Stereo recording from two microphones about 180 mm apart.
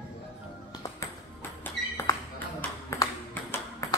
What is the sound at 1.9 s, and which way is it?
Ping, 20° left (ahead or behind).